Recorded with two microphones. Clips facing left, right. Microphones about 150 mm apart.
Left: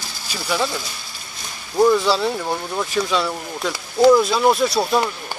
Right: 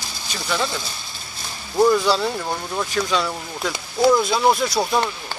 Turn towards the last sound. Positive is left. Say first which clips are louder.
# left 2 dB
turn(degrees=5)  # may be behind; listen again after turning